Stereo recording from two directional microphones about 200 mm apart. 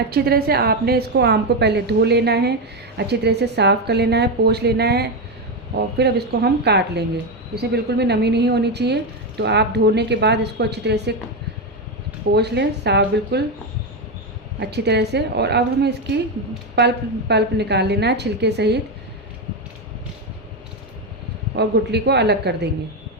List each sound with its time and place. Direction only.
0.1 s a woman's voice: 50° right (ahead or behind)
12.3 s a woman's voice: 55° right (ahead or behind)
14.6 s a woman's voice: 55° right (ahead or behind)
21.5 s a woman's voice: 55° right (ahead or behind)